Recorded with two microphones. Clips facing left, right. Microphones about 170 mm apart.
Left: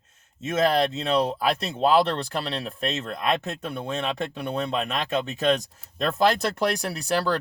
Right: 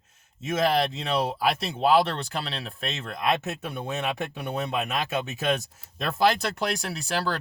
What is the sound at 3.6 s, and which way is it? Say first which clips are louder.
Speech: left 1 dB; 10° right (ahead or behind).